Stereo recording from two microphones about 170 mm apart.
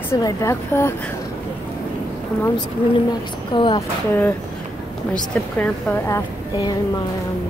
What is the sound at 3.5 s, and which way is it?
Speech, 30° left (ahead or behind).